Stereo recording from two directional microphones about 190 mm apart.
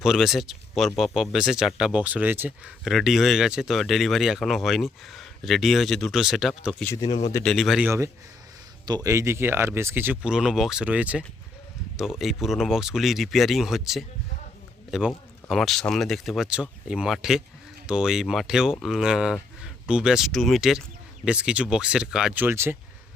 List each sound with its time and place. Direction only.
0.0 s speech: centre (ahead or behind)
6.9 s speech: 25° left (ahead or behind)
7.4 s speech: centre (ahead or behind)
7.9 s speech: 15° right (ahead or behind)